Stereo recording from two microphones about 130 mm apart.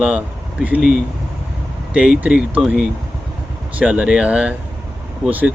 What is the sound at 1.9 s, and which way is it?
Speech, 5° right (ahead or behind).